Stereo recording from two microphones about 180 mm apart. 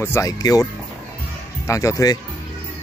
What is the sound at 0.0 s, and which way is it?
Speech, 15° left (ahead or behind).